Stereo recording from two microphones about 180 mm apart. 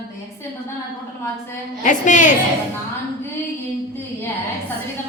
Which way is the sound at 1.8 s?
45° left (ahead or behind).